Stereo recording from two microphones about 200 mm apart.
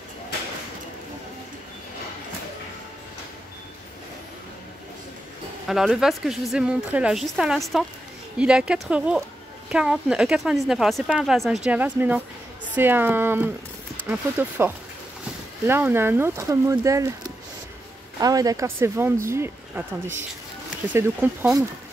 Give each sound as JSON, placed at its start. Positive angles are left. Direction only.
{"t": 5.7, "sound": "a woman's voice", "side_deg": 0}
{"t": 15.6, "sound": "speech", "side_deg": -10}
{"t": 18.2, "sound": "speech", "side_deg": -20}